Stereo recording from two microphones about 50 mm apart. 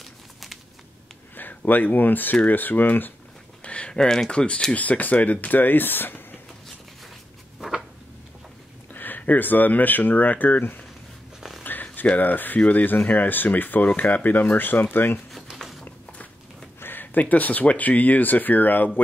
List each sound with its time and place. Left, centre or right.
0.0 s a sound: centre
1.3 s speech: left
3.6 s a sound: left
3.9 s speech: centre
4.7 s speech: left
8.9 s speech: left
11.6 s speech: left
15.5 s a sound: centre
16.8 s speech: left